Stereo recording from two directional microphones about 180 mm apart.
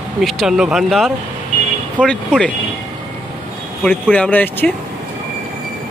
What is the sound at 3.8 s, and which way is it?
Speech, 5° left (ahead or behind).